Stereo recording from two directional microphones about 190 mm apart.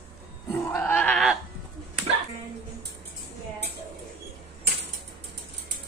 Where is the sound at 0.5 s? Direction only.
10° left (ahead or behind).